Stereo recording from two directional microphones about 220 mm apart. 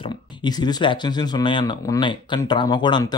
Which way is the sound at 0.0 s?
20° left (ahead or behind).